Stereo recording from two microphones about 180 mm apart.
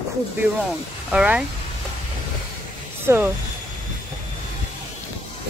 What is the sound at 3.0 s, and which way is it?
Speech, 10° right (ahead or behind).